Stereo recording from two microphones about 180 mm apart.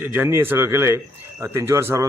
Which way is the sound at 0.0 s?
10° right (ahead or behind).